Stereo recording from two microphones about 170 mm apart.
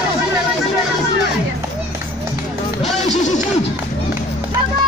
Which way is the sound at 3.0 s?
45° left (ahead or behind).